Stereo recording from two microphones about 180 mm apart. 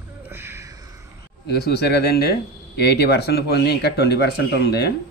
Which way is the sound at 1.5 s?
65° left (ahead or behind).